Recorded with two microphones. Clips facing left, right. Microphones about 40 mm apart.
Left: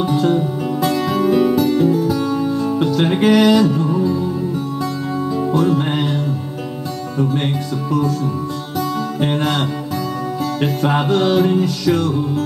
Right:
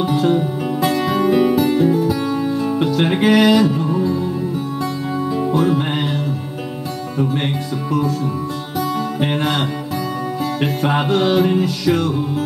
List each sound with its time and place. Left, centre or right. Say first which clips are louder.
0.0 s music: even; centre
5.5 s music: left 1 dB; centre
9.2 s music: left 2 dB; centre